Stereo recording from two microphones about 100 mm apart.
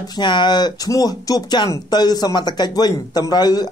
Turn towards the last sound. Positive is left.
turn(degrees=45)  # may be behind; listen again after turning